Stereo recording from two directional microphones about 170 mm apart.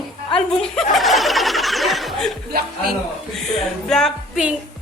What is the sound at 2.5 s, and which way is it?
Speech, 65° right (ahead or behind).